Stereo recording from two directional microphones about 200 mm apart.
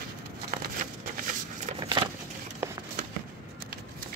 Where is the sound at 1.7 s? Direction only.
20° right (ahead or behind).